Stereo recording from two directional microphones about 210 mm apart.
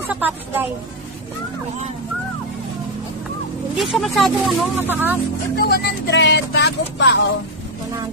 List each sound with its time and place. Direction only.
0.0 s a woman's voice: 10° right (ahead or behind)
3.7 s speech: centre (ahead or behind)
5.6 s speech: 50° left (ahead or behind)